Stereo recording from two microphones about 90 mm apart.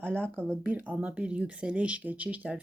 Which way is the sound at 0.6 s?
15° right (ahead or behind).